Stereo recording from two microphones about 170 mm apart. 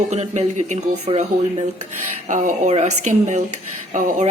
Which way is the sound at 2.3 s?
50° right (ahead or behind).